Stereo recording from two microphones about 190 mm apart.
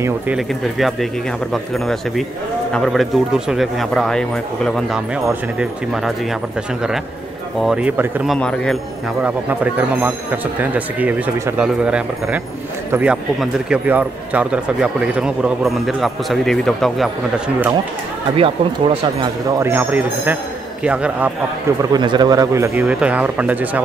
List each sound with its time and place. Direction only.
0.0 s speech: 5° right (ahead or behind)
7.6 s speech: 5° right (ahead or behind)
9.2 s speech: 10° right (ahead or behind)
18.3 s speech: 30° right (ahead or behind)
19.6 s speech: 10° right (ahead or behind)
21.9 s speech: 25° right (ahead or behind)